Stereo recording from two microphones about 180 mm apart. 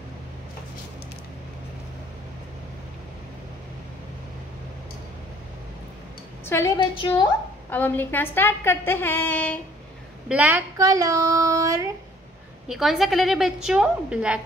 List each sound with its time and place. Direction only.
6.4 s a woman's voice: 15° left (ahead or behind)
6.8 s a woman's voice: 25° left (ahead or behind)
7.7 s a woman's voice: 10° left (ahead or behind)
10.2 s speech: 10° right (ahead or behind)
12.6 s a woman's voice: centre (ahead or behind)